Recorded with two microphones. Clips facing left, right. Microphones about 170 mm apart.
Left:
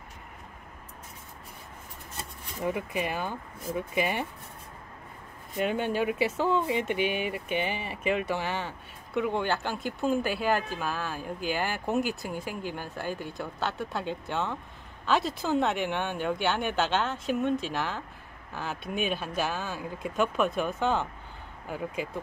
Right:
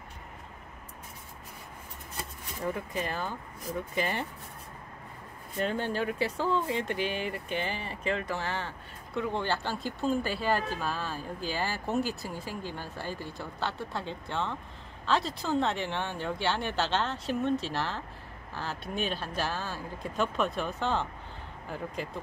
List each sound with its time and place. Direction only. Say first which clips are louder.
2.6 s speech: left 3 dB; 15° left (ahead or behind)
5.6 s speech: left 3 dB; 15° left (ahead or behind)